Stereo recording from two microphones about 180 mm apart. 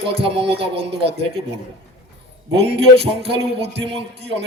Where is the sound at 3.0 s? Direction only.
30° right (ahead or behind).